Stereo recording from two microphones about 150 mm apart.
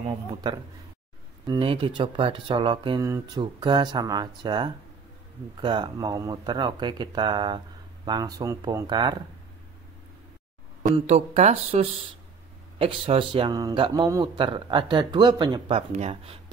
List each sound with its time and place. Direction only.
1.4 s speech: 30° right (ahead or behind)
3.0 s speech: 20° right (ahead or behind)
3.6 s speech: 30° right (ahead or behind)
10.8 s speech: 50° right (ahead or behind); by 13.7 s 25° right (ahead or behind)
13.7 s speech: 35° right (ahead or behind)
15.9 s speech: 45° right (ahead or behind)